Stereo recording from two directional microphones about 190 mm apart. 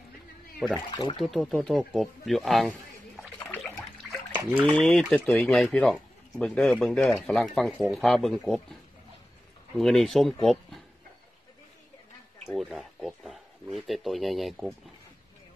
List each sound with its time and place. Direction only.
0.7 s speech: 20° left (ahead or behind)
1.2 s speech: centre (ahead or behind)
3.5 s water: 10° left (ahead or behind)
4.3 s a sound: 10° right (ahead or behind)
4.7 s speech: centre (ahead or behind)
9.8 s speech: centre (ahead or behind)
12.5 s speech: centre (ahead or behind)